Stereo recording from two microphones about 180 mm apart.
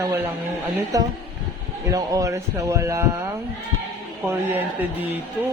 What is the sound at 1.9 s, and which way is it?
A man's voice, 20° right (ahead or behind).